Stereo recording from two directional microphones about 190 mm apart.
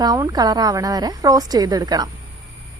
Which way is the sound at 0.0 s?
20° right (ahead or behind).